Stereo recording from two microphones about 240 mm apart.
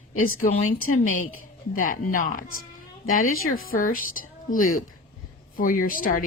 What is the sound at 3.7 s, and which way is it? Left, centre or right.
A woman's voice, left.